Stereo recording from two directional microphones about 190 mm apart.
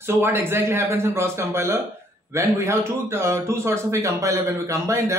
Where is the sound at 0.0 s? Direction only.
10° right (ahead or behind).